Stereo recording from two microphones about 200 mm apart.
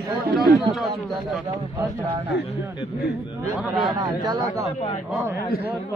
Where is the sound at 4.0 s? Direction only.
20° right (ahead or behind).